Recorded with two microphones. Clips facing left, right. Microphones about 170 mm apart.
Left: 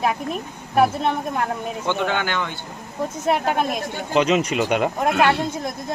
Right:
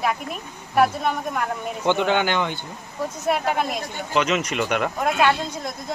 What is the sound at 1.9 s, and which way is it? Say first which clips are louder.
Speech: right 3 dB; 20° right (ahead or behind).